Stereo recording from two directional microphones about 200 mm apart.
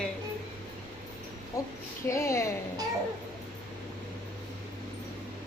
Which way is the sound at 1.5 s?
15° left (ahead or behind).